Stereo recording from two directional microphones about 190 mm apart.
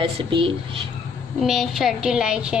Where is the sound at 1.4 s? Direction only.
Centre (ahead or behind).